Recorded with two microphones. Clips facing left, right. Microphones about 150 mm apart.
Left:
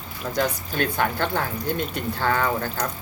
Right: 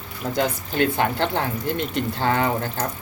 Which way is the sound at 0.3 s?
20° right (ahead or behind).